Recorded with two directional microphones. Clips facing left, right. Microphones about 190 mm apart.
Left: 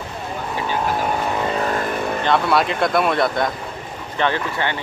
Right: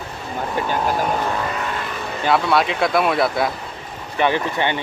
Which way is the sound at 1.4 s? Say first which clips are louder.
Left 4 dB; 30° left (ahead or behind).